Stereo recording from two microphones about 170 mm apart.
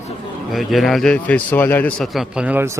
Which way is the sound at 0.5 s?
Centre (ahead or behind).